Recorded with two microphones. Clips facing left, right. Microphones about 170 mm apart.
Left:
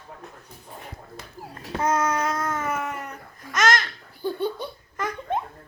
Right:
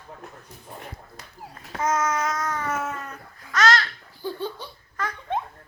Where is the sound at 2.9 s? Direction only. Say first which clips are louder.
Left 1 dB; 15° left (ahead or behind).